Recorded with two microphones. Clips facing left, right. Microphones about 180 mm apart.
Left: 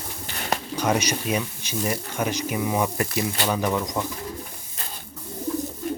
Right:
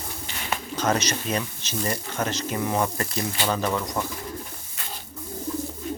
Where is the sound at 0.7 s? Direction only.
10° left (ahead or behind).